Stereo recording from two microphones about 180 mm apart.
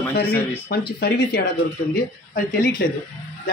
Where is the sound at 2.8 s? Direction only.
60° left (ahead or behind).